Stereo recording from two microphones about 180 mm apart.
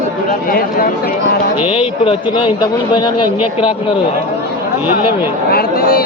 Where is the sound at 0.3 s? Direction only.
50° left (ahead or behind).